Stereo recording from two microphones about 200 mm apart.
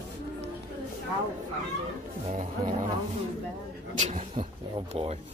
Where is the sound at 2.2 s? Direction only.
40° right (ahead or behind).